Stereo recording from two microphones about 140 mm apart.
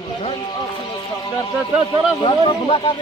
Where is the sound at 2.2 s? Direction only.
35° left (ahead or behind).